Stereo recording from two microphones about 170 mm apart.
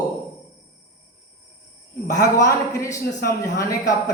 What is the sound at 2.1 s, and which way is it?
Speech, 20° left (ahead or behind).